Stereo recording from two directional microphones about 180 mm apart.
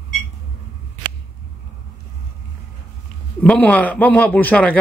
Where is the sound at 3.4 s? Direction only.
10° left (ahead or behind).